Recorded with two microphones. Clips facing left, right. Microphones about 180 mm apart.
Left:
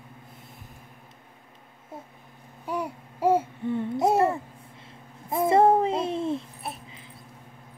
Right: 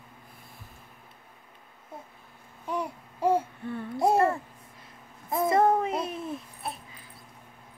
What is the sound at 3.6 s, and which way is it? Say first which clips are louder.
Babbling: left 3 dB; 20° left (ahead or behind).